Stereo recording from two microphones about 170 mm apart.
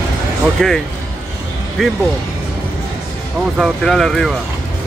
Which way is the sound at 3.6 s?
Centre (ahead or behind).